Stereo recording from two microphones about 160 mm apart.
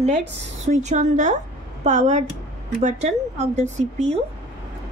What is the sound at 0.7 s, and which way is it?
Speech, 50° right (ahead or behind).